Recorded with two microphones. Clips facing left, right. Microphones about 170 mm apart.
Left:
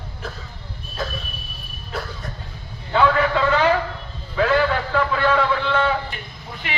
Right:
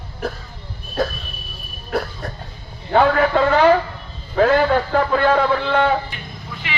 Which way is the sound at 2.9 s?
50° right (ahead or behind).